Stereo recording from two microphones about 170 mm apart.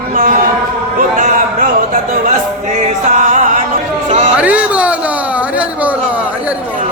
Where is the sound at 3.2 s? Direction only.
45° right (ahead or behind).